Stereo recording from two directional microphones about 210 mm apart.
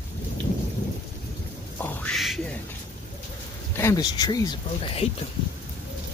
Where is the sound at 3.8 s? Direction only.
15° left (ahead or behind).